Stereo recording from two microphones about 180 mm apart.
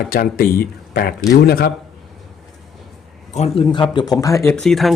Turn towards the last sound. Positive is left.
turn(degrees=0)  # may be behind; listen again after turning